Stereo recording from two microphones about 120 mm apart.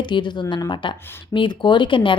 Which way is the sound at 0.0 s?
40° left (ahead or behind).